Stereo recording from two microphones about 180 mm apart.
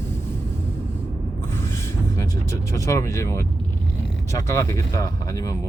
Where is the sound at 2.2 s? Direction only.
15° left (ahead or behind).